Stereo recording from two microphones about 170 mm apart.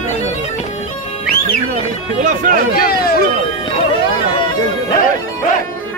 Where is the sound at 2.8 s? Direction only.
60° left (ahead or behind).